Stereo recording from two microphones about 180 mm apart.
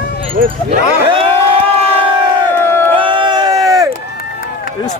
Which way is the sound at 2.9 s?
25° right (ahead or behind).